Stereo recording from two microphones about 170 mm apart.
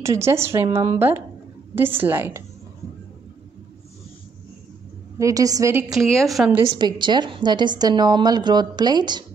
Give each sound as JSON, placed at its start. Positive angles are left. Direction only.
{"t": 0.0, "sound": "a woman's voice", "side_deg": -15}
{"t": 5.2, "sound": "a woman's voice", "side_deg": -20}
{"t": 5.9, "sound": "a woman's voice", "side_deg": 0}
{"t": 6.7, "sound": "a woman's voice", "side_deg": -25}